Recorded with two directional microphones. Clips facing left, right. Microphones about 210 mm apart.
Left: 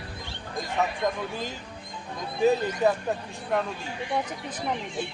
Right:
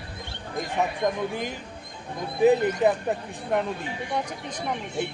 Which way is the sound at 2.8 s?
25° right (ahead or behind).